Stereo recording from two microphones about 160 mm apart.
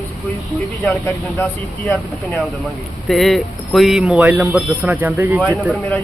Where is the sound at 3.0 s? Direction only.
Centre (ahead or behind).